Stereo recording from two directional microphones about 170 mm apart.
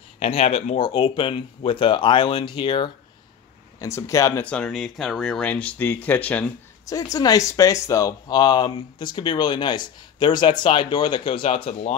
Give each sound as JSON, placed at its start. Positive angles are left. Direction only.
{"t": 0.2, "sound": "speech", "side_deg": 40}
{"t": 3.8, "sound": "speech", "side_deg": 20}
{"t": 4.5, "sound": "speech", "side_deg": 5}
{"t": 6.9, "sound": "speech", "side_deg": 20}